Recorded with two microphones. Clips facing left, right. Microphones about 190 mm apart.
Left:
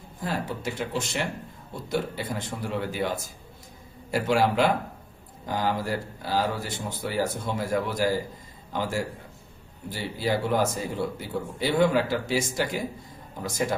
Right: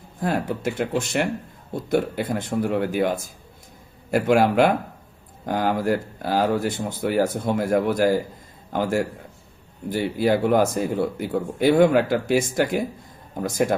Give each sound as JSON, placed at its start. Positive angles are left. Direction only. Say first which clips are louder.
{"t": 0.2, "sound": "speech", "louder": "right 6 dB", "side_deg": -55}
{"t": 4.1, "sound": "a man's voice", "louder": "right 5 dB", "side_deg": -55}